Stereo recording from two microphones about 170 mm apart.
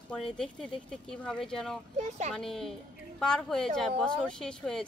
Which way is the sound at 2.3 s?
Centre (ahead or behind).